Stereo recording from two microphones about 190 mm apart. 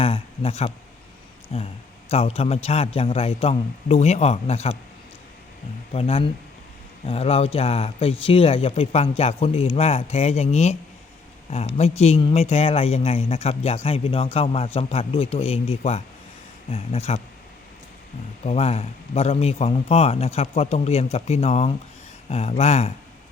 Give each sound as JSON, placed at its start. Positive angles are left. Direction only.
{"t": 0.0, "sound": "speech", "side_deg": 30}
{"t": 5.9, "sound": "speech", "side_deg": 30}
{"t": 18.4, "sound": "speech", "side_deg": 35}